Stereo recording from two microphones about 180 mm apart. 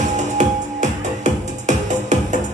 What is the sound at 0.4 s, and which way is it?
Music, 40° right (ahead or behind).